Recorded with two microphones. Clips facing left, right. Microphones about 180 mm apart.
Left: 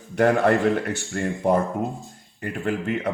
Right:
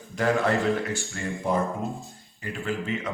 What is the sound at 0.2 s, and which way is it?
Speech, 60° left (ahead or behind).